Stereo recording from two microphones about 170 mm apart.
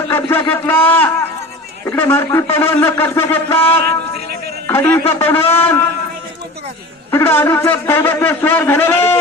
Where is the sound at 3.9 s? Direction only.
70° right (ahead or behind).